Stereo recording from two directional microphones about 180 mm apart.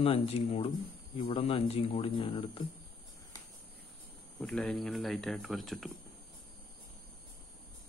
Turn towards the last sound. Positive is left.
turn(degrees=0)  # may be behind; listen again after turning